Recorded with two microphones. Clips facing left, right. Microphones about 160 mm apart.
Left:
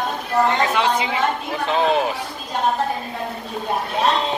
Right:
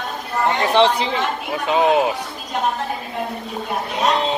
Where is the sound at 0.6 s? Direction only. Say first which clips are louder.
Right 4 dB; 30° right (ahead or behind).